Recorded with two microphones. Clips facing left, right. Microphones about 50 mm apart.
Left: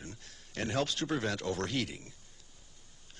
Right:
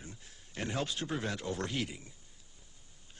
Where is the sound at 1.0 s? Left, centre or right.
Centre.